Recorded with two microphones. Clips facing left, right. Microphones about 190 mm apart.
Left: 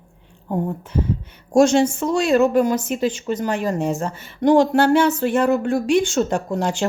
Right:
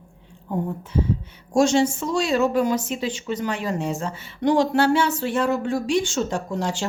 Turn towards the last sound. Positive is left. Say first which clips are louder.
# left 4 dB
turn(degrees=55)  # may be behind; listen again after turning